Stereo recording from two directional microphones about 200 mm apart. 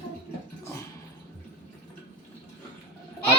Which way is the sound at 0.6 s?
15° left (ahead or behind).